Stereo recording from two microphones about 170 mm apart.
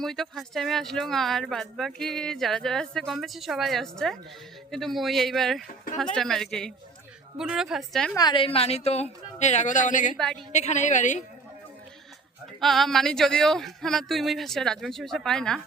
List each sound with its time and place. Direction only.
0.0 s speech: centre (ahead or behind)
8.1 s a woman's voice: 25° left (ahead or behind); by 11.2 s 45° left (ahead or behind)
12.5 s speech: centre (ahead or behind)